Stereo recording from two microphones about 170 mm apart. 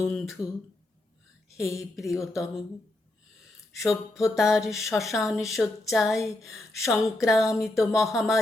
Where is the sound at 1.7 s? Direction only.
Centre (ahead or behind).